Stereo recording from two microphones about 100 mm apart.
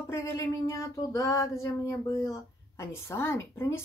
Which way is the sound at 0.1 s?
30° left (ahead or behind).